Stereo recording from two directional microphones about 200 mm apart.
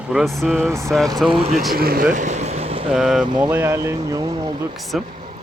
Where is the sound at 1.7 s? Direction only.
50° right (ahead or behind).